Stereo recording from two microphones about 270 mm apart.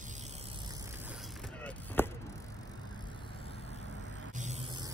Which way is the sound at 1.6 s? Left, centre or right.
Centre.